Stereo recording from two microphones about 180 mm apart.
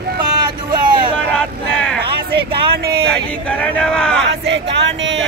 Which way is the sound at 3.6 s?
5° left (ahead or behind).